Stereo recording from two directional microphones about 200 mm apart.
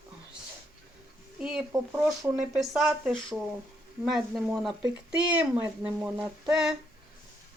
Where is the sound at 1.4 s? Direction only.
5° right (ahead or behind).